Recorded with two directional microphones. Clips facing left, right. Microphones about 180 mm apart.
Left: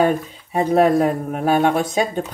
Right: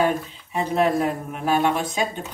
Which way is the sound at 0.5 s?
45° left (ahead or behind).